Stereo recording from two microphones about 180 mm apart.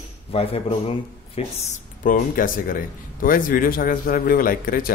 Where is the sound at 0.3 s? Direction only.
30° left (ahead or behind).